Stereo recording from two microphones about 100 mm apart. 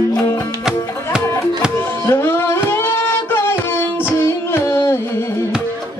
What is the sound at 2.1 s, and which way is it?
Music, 25° left (ahead or behind).